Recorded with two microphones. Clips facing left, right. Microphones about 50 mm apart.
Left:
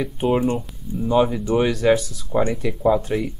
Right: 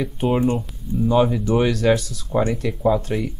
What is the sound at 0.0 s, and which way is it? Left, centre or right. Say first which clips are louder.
Speech: even; centre.